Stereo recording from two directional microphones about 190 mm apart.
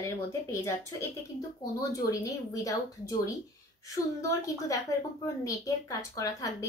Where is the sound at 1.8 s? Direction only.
20° left (ahead or behind).